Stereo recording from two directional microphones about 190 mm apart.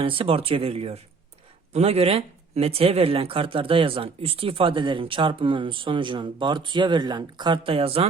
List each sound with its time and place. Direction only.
0.0 s speech: 30° right (ahead or behind)